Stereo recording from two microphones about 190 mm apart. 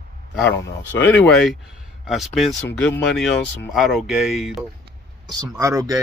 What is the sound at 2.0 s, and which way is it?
Speech, centre (ahead or behind).